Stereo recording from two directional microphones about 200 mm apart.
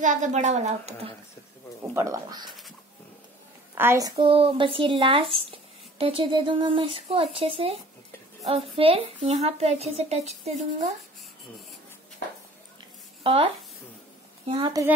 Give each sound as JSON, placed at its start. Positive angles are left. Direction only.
{"t": 0.0, "sound": "speech", "side_deg": -40}
{"t": 2.0, "sound": "speech", "side_deg": -15}
{"t": 3.7, "sound": "speech", "side_deg": -10}
{"t": 4.2, "sound": "speech", "side_deg": -25}
{"t": 13.2, "sound": "speech", "side_deg": -25}
{"t": 14.5, "sound": "speech", "side_deg": -25}